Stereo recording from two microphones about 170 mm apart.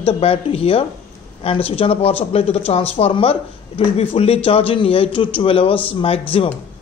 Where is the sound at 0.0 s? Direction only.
35° left (ahead or behind).